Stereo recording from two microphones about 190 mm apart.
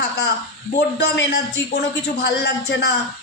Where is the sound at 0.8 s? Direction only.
65° left (ahead or behind).